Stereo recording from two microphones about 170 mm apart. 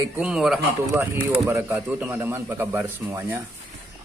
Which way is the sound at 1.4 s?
15° right (ahead or behind).